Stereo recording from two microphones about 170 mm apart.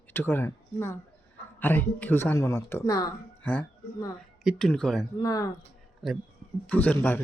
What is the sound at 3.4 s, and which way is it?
Speech, 10° left (ahead or behind).